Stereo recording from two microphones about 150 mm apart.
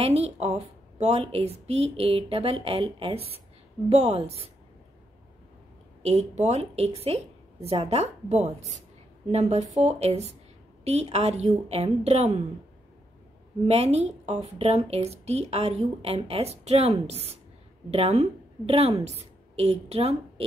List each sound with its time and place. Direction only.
0.0 s a woman's voice: 40° right (ahead or behind)
6.0 s a woman's voice: 50° right (ahead or behind)
13.7 s a woman's voice: 45° right (ahead or behind)